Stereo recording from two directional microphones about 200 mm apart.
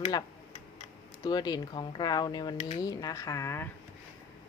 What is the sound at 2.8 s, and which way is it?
Speech, 15° left (ahead or behind).